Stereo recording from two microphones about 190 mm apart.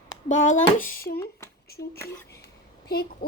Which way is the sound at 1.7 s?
55° left (ahead or behind).